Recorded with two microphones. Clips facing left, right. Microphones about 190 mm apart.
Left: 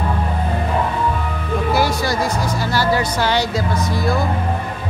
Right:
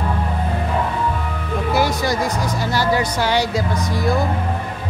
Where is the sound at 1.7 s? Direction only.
20° right (ahead or behind).